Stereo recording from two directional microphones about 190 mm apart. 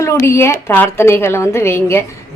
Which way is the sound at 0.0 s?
15° left (ahead or behind).